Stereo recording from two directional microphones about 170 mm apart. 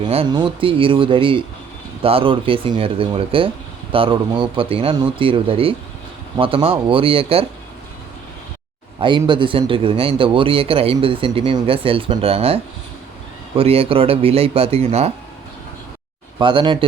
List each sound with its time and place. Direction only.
0.0 s a man's voice: 30° right (ahead or behind)
9.0 s a man's voice: 30° right (ahead or behind)
13.6 s a man's voice: 35° right (ahead or behind)
16.4 s speech: 30° right (ahead or behind)